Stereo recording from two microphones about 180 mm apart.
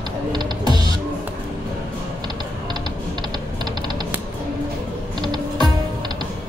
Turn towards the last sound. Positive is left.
turn(degrees=-25)  # may be behind; listen again after turning